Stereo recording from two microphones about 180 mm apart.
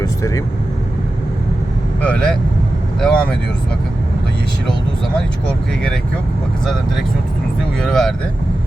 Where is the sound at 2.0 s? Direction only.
5° left (ahead or behind).